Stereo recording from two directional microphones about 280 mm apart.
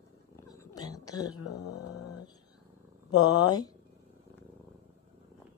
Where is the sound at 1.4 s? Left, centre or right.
Left.